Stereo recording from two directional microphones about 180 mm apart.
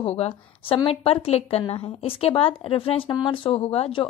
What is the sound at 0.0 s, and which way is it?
A woman's voice, 35° left (ahead or behind).